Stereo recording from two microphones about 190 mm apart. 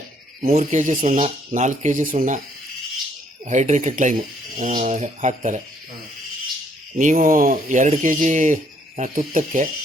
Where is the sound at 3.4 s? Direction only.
40° right (ahead or behind).